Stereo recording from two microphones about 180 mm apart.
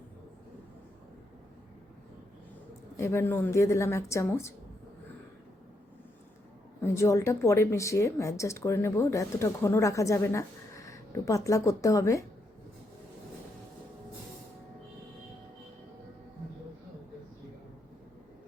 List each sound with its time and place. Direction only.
3.0 s speech: 15° left (ahead or behind)
6.8 s speech: 15° left (ahead or behind)